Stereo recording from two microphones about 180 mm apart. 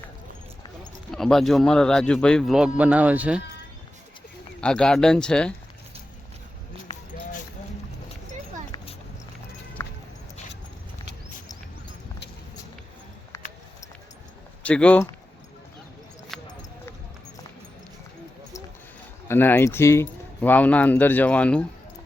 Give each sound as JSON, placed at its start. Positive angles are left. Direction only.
{"t": 1.1, "sound": "a man's voice", "side_deg": 0}
{"t": 4.6, "sound": "a man's voice", "side_deg": 5}
{"t": 9.8, "sound": "a sound", "side_deg": 15}
{"t": 14.6, "sound": "speech", "side_deg": 5}
{"t": 16.3, "sound": "clip-clop", "side_deg": 0}
{"t": 19.3, "sound": "speech", "side_deg": 10}